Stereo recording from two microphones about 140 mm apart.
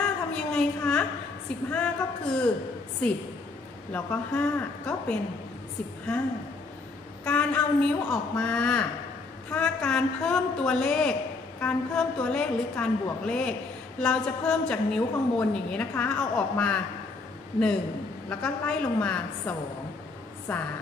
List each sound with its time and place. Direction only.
0.0 s a sound: 5° left (ahead or behind)
1.7 s a woman's voice: 5° left (ahead or behind)
3.9 s a woman's voice: 10° left (ahead or behind)
7.2 s a woman's voice: 10° left (ahead or behind)
18.3 s a woman's voice: 10° left (ahead or behind)